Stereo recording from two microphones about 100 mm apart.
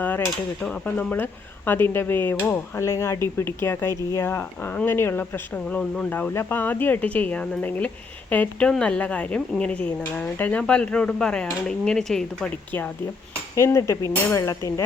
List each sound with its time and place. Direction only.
0.6 s speech: 15° left (ahead or behind)
5.6 s speech: 10° left (ahead or behind)
13.6 s speech: 30° left (ahead or behind)